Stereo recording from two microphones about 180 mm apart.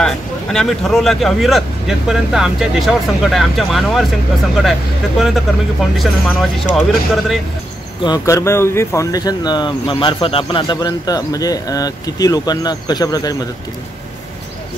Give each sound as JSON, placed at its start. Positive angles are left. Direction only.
{"t": 0.0, "sound": "speech", "side_deg": 5}
{"t": 8.0, "sound": "speech", "side_deg": 20}